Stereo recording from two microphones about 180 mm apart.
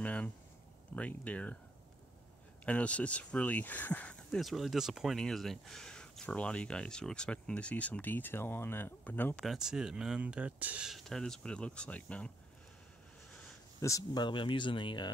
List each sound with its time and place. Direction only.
0.0 s a sound: 5° left (ahead or behind)
0.9 s speech: 5° left (ahead or behind)
2.6 s speech: 5° left (ahead or behind)
13.7 s speech: 20° left (ahead or behind)